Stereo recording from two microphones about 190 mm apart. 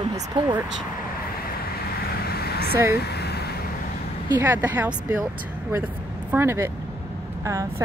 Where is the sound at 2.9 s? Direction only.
60° left (ahead or behind).